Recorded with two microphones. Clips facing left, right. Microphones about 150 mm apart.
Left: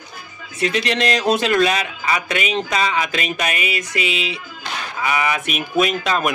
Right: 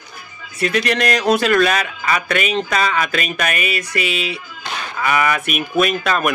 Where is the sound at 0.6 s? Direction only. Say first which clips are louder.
Right 1 dB; 20° left (ahead or behind).